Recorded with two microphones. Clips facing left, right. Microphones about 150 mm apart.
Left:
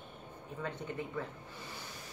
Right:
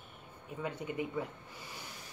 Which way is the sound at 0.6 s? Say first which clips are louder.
Right 3 dB; 10° right (ahead or behind).